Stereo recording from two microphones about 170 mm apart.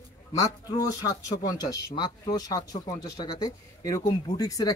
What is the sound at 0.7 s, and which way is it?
Speech, 20° left (ahead or behind).